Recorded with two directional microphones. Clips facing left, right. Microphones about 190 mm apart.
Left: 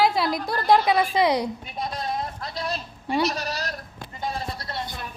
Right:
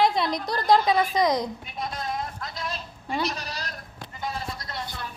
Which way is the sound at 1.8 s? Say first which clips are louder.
Left 2 dB; 30° left (ahead or behind).